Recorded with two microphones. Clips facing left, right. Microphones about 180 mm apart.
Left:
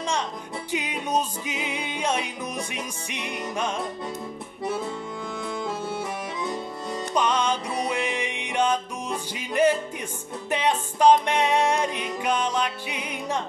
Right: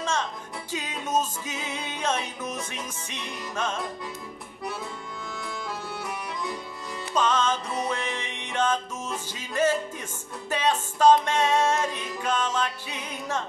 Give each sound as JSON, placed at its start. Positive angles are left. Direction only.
{"t": 0.0, "sound": "music", "side_deg": 15}
{"t": 5.7, "sound": "music", "side_deg": 25}
{"t": 7.2, "sound": "music", "side_deg": 15}